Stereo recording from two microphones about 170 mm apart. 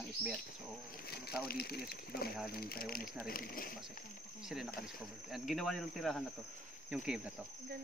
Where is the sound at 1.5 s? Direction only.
65° left (ahead or behind).